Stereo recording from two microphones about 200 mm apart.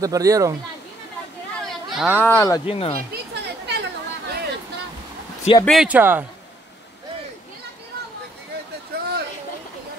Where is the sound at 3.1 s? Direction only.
55° right (ahead or behind).